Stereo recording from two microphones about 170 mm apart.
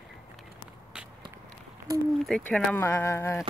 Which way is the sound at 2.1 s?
5° left (ahead or behind).